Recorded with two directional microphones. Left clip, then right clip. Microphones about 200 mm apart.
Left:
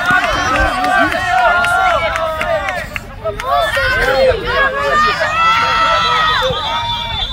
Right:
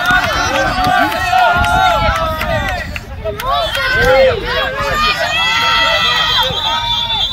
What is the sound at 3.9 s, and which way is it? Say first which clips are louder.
Run: right 5 dB; 25° left (ahead or behind).